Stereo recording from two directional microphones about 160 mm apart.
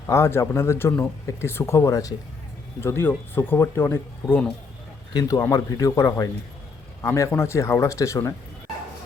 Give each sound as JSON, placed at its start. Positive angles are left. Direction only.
{"t": 0.1, "sound": "speech", "side_deg": 15}
{"t": 5.1, "sound": "speech", "side_deg": 20}